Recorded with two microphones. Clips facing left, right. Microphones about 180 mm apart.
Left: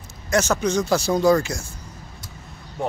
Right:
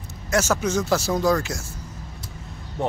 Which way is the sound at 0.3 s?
5° right (ahead or behind).